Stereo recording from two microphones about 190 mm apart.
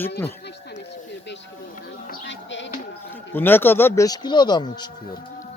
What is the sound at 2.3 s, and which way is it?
Sheep, 75° left (ahead or behind).